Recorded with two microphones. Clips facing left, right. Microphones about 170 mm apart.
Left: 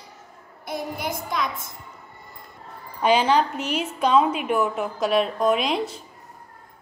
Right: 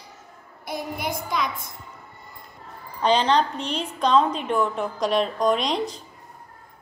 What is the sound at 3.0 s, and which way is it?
A woman's voice, 10° left (ahead or behind).